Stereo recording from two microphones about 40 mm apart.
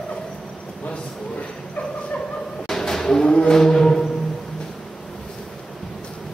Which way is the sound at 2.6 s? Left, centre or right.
Centre.